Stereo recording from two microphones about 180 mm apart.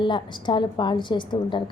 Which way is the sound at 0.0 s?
25° left (ahead or behind).